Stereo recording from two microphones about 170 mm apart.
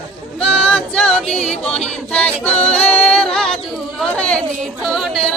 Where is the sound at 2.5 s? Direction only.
35° left (ahead or behind).